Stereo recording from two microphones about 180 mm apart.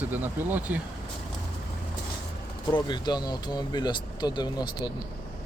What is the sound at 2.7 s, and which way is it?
Speech, 25° left (ahead or behind).